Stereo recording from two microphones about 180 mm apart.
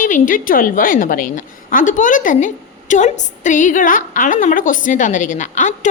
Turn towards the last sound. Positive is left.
turn(degrees=45)  # may be behind; listen again after turning